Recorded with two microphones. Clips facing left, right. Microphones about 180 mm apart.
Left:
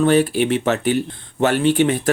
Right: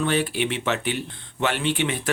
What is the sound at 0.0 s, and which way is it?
Speech, 40° left (ahead or behind).